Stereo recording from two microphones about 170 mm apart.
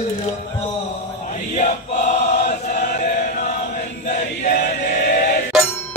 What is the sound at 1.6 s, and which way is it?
Choir, 45° left (ahead or behind).